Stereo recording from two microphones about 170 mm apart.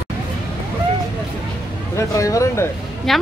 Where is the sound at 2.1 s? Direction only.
20° left (ahead or behind).